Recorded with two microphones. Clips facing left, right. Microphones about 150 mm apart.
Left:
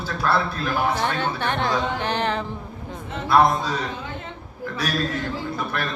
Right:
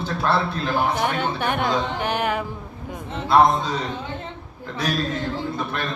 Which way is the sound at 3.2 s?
20° right (ahead or behind).